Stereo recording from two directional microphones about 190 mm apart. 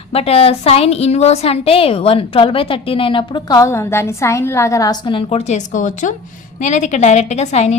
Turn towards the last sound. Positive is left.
turn(degrees=35)  # may be behind; listen again after turning